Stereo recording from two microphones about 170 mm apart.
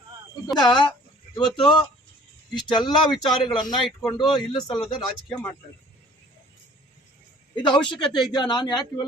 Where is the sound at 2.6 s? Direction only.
25° left (ahead or behind).